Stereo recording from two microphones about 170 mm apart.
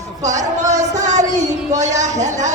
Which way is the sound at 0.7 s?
45° right (ahead or behind).